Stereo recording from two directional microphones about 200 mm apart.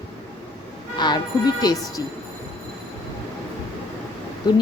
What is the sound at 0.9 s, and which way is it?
A woman's voice, 20° left (ahead or behind).